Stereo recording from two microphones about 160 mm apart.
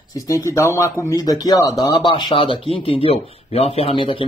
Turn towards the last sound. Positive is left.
turn(degrees=35)  # may be behind; listen again after turning